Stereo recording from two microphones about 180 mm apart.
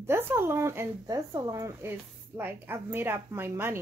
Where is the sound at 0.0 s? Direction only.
15° right (ahead or behind).